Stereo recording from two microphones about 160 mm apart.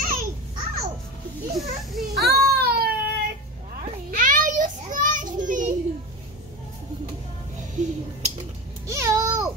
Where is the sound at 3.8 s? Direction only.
55° right (ahead or behind).